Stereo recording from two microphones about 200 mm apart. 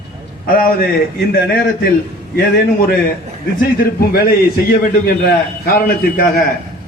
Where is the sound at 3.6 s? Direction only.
50° left (ahead or behind).